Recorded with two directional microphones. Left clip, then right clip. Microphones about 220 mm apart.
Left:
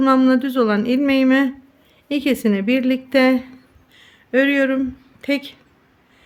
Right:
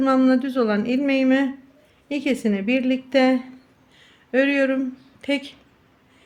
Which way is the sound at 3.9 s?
20° left (ahead or behind).